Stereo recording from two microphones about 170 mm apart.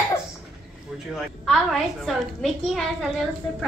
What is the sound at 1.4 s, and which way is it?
Speech, centre (ahead or behind).